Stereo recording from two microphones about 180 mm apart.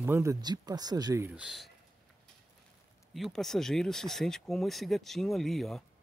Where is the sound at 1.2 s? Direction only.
5° right (ahead or behind).